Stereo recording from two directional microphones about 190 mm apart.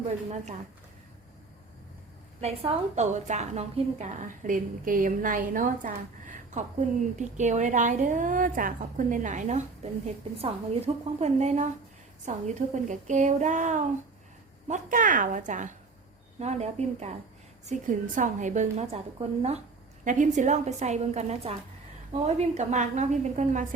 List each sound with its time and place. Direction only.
2.4 s a woman's voice: 35° right (ahead or behind)
18.1 s a woman's voice: 40° right (ahead or behind)